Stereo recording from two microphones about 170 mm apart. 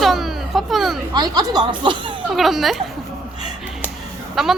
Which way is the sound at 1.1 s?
25° right (ahead or behind).